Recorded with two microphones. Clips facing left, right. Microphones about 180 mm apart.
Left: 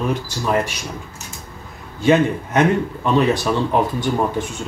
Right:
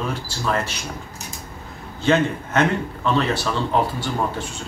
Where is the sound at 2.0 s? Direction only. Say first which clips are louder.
Left 4 dB; 15° left (ahead or behind).